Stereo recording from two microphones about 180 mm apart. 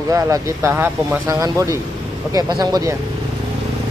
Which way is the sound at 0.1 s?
15° right (ahead or behind).